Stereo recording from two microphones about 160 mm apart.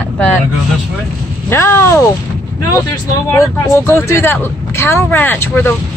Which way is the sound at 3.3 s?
15° left (ahead or behind).